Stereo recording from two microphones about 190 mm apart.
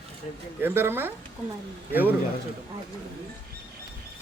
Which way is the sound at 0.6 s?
10° right (ahead or behind).